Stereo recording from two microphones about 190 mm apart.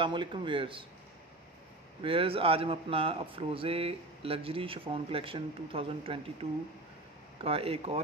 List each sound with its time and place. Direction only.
0.0 s speech: 25° right (ahead or behind)
2.0 s speech: 30° right (ahead or behind)
7.4 s speech: 30° right (ahead or behind)